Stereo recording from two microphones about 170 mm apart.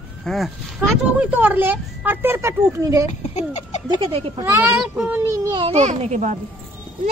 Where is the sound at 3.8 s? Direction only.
30° right (ahead or behind).